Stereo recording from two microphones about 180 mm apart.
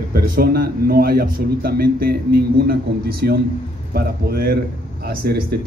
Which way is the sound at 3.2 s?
55° right (ahead or behind).